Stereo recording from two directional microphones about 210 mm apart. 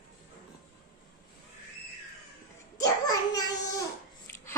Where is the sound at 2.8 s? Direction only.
15° left (ahead or behind).